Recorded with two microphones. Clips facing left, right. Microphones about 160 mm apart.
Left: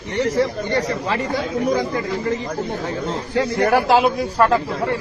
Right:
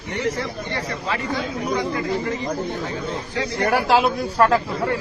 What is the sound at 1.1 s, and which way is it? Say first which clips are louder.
Speech: left 3 dB; 45° left (ahead or behind).